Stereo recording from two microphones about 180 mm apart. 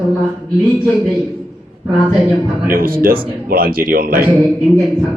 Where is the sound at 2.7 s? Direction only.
55° right (ahead or behind).